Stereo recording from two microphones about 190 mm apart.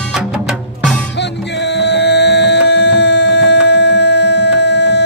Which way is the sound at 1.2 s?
65° left (ahead or behind).